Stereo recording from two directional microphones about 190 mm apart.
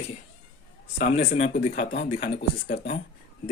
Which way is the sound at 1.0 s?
50° left (ahead or behind).